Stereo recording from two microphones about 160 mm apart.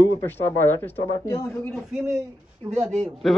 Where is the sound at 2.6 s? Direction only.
40° right (ahead or behind).